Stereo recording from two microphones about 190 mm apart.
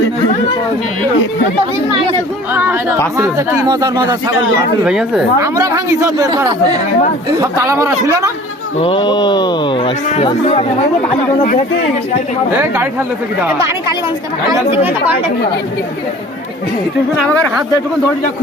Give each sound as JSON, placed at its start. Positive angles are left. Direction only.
{"t": 3.2, "sound": "speech", "side_deg": -20}
{"t": 4.8, "sound": "speech", "side_deg": -5}
{"t": 5.4, "sound": "speech", "side_deg": -15}
{"t": 8.8, "sound": "speech", "side_deg": 25}
{"t": 12.5, "sound": "speech", "side_deg": -10}